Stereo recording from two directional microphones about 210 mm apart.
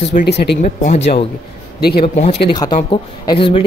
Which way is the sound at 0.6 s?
35° left (ahead or behind).